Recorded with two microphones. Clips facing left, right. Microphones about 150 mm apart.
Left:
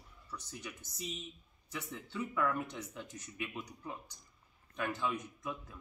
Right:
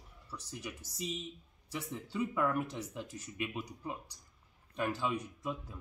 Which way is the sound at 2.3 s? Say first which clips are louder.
Even; 20° right (ahead or behind).